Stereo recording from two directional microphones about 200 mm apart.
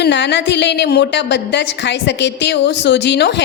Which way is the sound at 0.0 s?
60° left (ahead or behind).